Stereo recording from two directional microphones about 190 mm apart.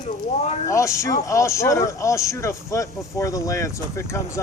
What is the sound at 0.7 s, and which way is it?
Speech, 15° left (ahead or behind).